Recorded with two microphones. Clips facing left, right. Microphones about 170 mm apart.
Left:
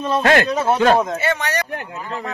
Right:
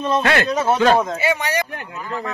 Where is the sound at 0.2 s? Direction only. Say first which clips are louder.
Left 3 dB; 45° left (ahead or behind).